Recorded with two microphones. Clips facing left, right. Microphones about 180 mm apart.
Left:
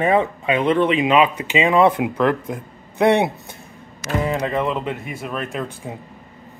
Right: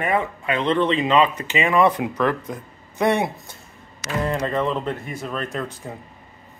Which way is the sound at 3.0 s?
65° left (ahead or behind).